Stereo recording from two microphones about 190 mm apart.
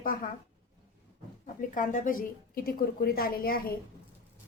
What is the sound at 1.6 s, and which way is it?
Speech, 45° left (ahead or behind).